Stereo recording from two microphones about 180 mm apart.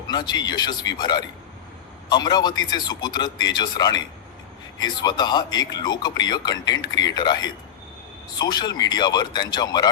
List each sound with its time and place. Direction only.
0.1 s speech: 20° left (ahead or behind)